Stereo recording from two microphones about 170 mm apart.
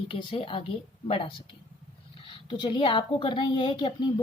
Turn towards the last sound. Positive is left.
turn(degrees=25)  # may be behind; listen again after turning